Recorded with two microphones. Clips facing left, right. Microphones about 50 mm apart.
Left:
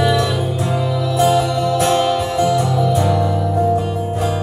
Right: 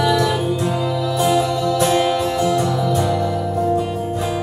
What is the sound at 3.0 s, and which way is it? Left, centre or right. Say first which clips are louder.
Music: left 2 dB; left.